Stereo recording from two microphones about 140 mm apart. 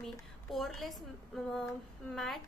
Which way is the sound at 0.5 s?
Centre (ahead or behind).